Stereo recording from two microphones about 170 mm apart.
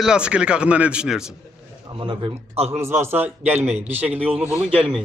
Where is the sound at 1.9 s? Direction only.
30° right (ahead or behind).